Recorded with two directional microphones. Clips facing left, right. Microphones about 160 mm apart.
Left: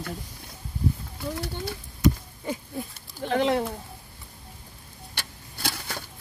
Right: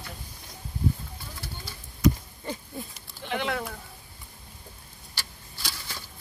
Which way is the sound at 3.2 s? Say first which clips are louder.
Left 7 dB; 35° left (ahead or behind).